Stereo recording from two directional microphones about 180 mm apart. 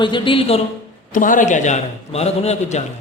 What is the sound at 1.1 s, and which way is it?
A man's voice, 45° left (ahead or behind).